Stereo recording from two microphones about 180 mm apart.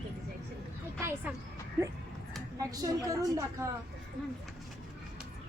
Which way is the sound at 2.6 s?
20° right (ahead or behind).